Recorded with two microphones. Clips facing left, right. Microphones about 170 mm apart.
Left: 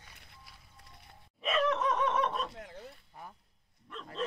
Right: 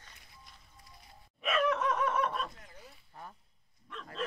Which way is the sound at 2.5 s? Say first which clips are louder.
Left 8 dB; 70° left (ahead or behind).